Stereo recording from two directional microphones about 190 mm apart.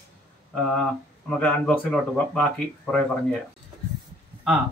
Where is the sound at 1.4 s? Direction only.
5° left (ahead or behind).